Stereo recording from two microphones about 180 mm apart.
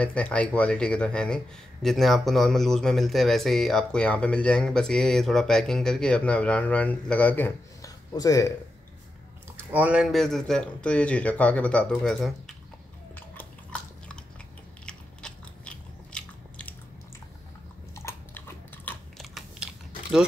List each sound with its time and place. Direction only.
0.0 s speech: 5° left (ahead or behind)
9.7 s speech: 10° right (ahead or behind)
13.1 s biting: 10° left (ahead or behind)
17.9 s biting: 15° left (ahead or behind)
18.9 s biting: centre (ahead or behind)